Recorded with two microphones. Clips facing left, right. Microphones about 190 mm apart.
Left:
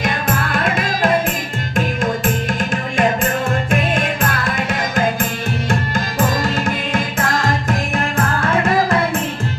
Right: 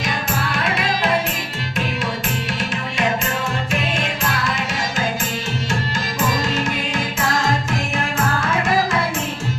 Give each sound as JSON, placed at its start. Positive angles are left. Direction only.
{"t": 0.0, "sound": "music", "side_deg": 50}